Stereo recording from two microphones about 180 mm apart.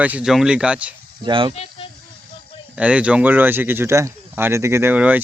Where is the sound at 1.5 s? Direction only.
35° left (ahead or behind).